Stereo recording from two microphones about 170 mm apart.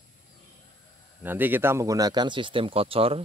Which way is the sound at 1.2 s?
10° right (ahead or behind).